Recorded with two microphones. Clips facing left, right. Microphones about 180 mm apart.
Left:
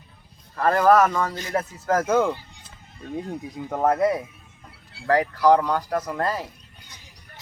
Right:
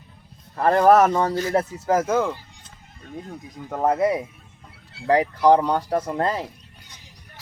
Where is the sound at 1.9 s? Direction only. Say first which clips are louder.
Even; 5° right (ahead or behind).